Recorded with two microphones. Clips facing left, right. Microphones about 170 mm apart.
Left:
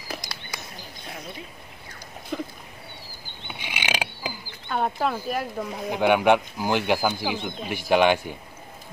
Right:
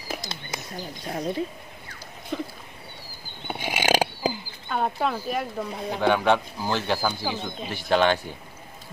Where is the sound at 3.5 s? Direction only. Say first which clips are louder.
Right 8 dB; 45° right (ahead or behind).